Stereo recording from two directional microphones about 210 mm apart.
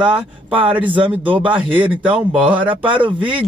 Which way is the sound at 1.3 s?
25° right (ahead or behind).